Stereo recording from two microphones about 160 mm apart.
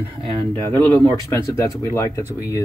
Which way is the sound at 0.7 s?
10° left (ahead or behind).